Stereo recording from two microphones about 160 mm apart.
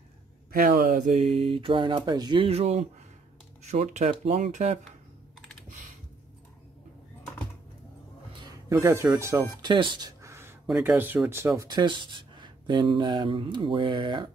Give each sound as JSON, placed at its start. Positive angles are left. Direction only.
{"t": 0.5, "sound": "speech", "side_deg": -65}
{"t": 8.4, "sound": "speech", "side_deg": -25}
{"t": 9.6, "sound": "speech", "side_deg": -30}
{"t": 11.0, "sound": "speech", "side_deg": -10}